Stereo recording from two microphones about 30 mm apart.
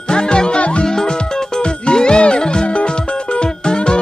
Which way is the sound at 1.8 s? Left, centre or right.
Left.